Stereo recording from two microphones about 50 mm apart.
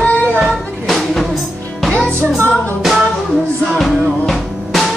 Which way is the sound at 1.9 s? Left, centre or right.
Centre.